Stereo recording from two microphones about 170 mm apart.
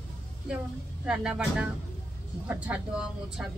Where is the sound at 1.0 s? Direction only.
5° right (ahead or behind).